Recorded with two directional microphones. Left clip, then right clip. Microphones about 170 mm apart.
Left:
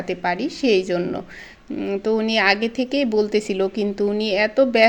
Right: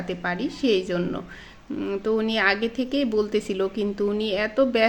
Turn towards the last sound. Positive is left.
turn(degrees=20)  # may be behind; listen again after turning